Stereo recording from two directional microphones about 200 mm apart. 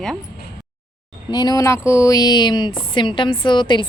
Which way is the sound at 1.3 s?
20° left (ahead or behind).